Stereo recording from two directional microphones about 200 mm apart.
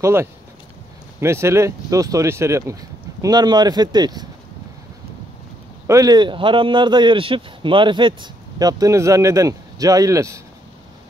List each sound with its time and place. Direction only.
0.0 s speech: 15° right (ahead or behind)
5.9 s speech: 20° right (ahead or behind)